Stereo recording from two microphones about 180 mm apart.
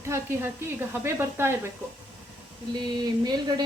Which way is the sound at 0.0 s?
15° right (ahead or behind).